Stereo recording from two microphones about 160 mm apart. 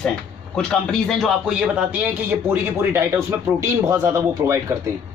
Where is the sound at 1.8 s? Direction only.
10° right (ahead or behind).